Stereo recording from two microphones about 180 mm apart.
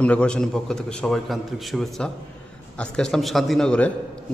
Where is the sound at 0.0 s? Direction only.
5° left (ahead or behind).